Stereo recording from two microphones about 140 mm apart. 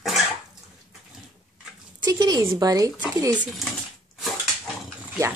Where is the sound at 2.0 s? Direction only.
30° right (ahead or behind).